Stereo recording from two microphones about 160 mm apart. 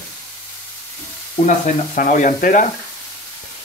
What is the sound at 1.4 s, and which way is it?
Speech, 55° left (ahead or behind).